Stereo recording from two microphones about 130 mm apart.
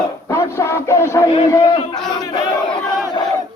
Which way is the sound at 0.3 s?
20° left (ahead or behind).